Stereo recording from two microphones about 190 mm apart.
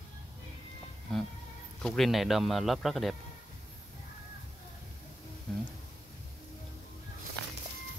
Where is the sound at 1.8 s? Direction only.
Centre (ahead or behind).